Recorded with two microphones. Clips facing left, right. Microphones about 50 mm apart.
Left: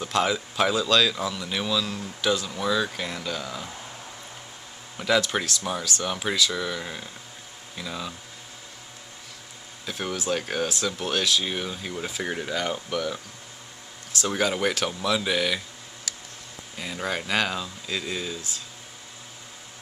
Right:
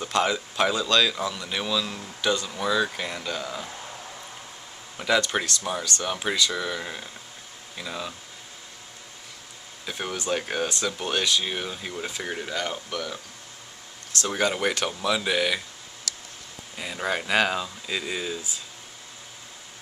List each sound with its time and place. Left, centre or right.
0.0 s speech: centre
4.9 s speech: centre
9.8 s speech: centre
14.2 s speech: centre
16.7 s speech: centre